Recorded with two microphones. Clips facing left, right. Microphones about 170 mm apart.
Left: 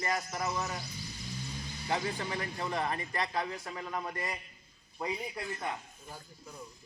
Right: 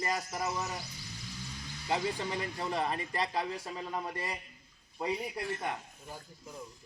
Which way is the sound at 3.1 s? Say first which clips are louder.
Right 1 dB; 30° right (ahead or behind).